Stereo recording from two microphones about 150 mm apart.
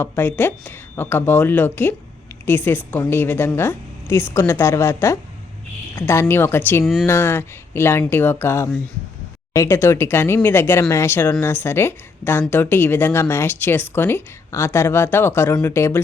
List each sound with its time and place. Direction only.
0.0 s speech: 15° left (ahead or behind)